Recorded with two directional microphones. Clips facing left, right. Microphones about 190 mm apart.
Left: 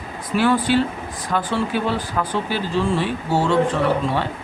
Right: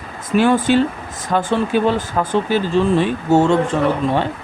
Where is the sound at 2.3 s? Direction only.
20° right (ahead or behind).